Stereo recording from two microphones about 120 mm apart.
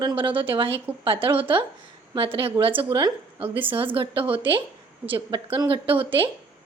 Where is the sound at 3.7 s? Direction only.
45° right (ahead or behind).